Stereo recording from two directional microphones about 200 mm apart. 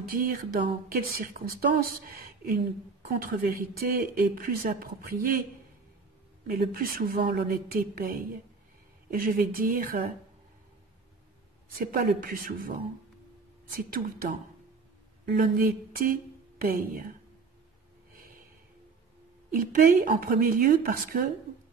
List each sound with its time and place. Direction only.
0.0 s a woman's voice: 45° right (ahead or behind)
6.4 s a woman's voice: 45° right (ahead or behind)
11.8 s a woman's voice: 45° right (ahead or behind)
13.7 s a woman's voice: 45° right (ahead or behind)
19.5 s a woman's voice: 45° right (ahead or behind)